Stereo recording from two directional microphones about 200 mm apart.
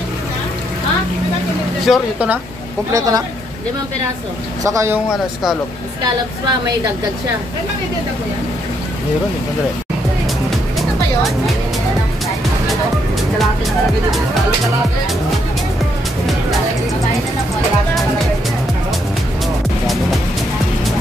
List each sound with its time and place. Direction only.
1.9 s speech: 5° right (ahead or behind)
2.9 s speech: 15° right (ahead or behind)
4.6 s speech: 15° right (ahead or behind)